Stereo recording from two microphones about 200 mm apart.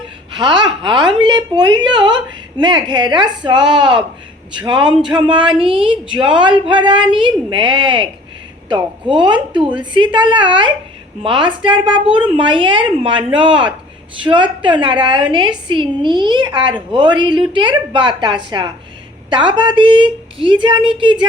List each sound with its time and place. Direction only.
0.3 s a woman's voice: 20° right (ahead or behind)